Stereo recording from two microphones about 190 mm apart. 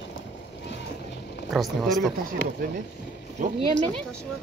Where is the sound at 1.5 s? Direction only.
Centre (ahead or behind).